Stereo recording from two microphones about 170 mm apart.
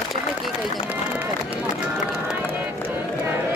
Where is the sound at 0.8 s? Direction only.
10° right (ahead or behind).